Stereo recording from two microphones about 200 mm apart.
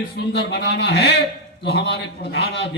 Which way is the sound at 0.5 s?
60° left (ahead or behind).